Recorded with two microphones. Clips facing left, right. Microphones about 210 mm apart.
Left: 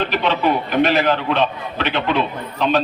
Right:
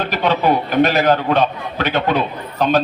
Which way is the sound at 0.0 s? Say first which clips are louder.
Right 1 dB; 40° right (ahead or behind).